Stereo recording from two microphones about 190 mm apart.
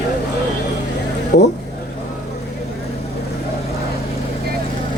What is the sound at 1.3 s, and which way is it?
Speech, 60° left (ahead or behind).